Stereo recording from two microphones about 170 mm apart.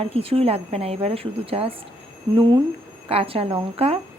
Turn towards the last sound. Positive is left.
turn(degrees=-35)  # may be behind; listen again after turning